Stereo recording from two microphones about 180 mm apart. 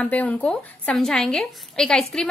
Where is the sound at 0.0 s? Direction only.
10° left (ahead or behind).